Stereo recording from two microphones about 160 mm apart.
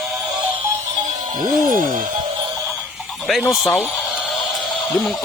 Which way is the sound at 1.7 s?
55° right (ahead or behind).